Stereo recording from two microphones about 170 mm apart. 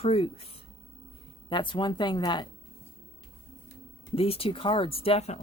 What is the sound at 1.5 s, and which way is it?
Speech, 25° left (ahead or behind).